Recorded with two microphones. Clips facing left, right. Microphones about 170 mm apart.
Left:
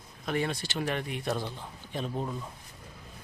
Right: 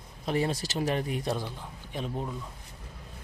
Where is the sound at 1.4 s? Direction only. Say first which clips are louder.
Left 1 dB; 10° right (ahead or behind).